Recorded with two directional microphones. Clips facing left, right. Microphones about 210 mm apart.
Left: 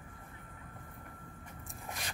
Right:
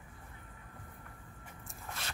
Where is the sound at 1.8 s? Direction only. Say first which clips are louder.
Left 1 dB; 15° left (ahead or behind).